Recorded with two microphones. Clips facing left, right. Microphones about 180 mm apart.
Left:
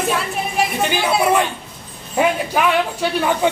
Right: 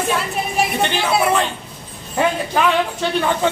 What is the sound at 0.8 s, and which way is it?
Speech, 5° left (ahead or behind).